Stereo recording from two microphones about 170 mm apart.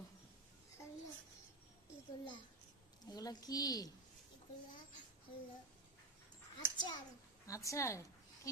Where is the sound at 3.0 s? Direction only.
20° left (ahead or behind).